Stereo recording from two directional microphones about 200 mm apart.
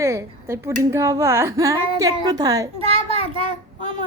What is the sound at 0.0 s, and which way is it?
Speech, 15° right (ahead or behind).